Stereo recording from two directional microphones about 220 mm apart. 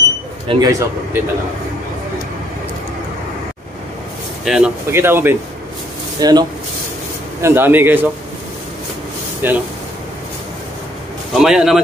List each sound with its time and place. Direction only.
0.5 s speech: 15° right (ahead or behind)
4.5 s speech: 5° right (ahead or behind)
7.4 s speech: 10° right (ahead or behind)
9.4 s speech: 10° right (ahead or behind)
11.3 s speech: centre (ahead or behind)